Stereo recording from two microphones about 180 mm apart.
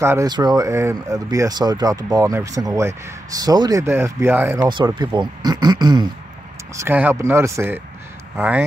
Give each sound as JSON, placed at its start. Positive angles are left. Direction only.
{"t": 0.0, "sound": "speech", "side_deg": -15}
{"t": 4.6, "sound": "speech", "side_deg": -25}